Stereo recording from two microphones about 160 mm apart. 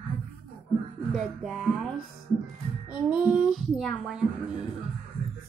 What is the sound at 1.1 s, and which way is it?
Speech, centre (ahead or behind).